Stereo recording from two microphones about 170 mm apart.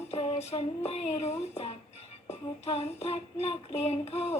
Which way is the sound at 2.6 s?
35° left (ahead or behind).